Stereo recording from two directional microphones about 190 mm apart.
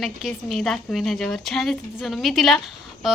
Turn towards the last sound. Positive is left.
turn(degrees=0)  # may be behind; listen again after turning